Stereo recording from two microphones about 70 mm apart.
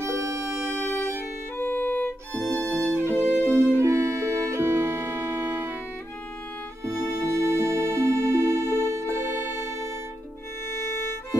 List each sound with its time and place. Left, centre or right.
0.0 s music: right
1.6 s violin: left
2.5 s music: left
3.0 s music: right
3.3 s music: left
3.7 s music: right
6.8 s music: right